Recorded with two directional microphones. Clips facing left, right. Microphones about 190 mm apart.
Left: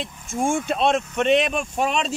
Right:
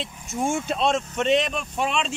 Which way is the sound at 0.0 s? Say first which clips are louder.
Left 2 dB; 50° left (ahead or behind).